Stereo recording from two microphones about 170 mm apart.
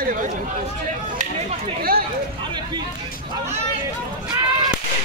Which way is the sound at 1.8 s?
60° right (ahead or behind).